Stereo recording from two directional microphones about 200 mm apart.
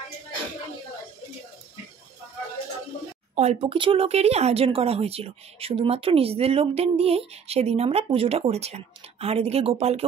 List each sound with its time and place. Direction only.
3.3 s speech: 30° right (ahead or behind)